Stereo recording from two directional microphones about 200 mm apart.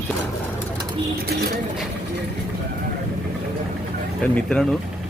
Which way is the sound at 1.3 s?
50° right (ahead or behind).